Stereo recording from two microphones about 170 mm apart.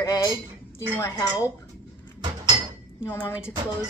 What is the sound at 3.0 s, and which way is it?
Speech, 15° left (ahead or behind).